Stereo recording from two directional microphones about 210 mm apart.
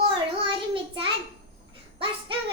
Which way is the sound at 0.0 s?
25° right (ahead or behind).